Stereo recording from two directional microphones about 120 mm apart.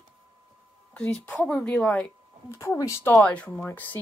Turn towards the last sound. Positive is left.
turn(degrees=15)  # may be behind; listen again after turning